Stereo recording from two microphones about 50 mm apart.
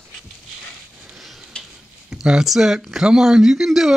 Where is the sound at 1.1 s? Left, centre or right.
Centre.